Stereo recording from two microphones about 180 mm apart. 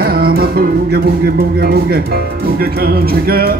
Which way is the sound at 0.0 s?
60° right (ahead or behind).